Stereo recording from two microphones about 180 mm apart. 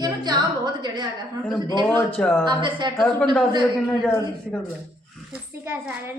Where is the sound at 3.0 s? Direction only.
5° left (ahead or behind).